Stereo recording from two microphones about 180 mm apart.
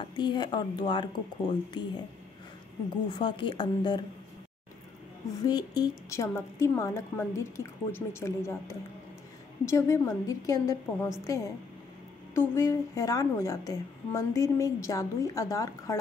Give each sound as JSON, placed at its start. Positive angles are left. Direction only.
{"t": 0.0, "sound": "speech", "side_deg": 25}
{"t": 3.1, "sound": "speech", "side_deg": 25}
{"t": 5.5, "sound": "a woman's voice", "side_deg": 20}